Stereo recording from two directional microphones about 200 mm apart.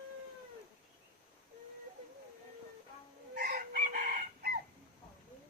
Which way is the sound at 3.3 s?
50° right (ahead or behind).